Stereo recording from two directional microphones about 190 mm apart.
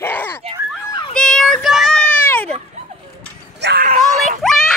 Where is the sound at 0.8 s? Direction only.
20° left (ahead or behind).